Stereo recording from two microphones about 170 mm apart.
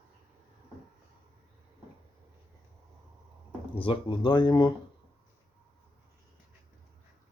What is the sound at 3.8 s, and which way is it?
Speech, 30° left (ahead or behind).